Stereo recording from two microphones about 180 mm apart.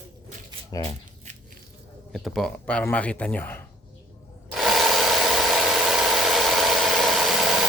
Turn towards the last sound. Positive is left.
turn(degrees=0)  # may be behind; listen again after turning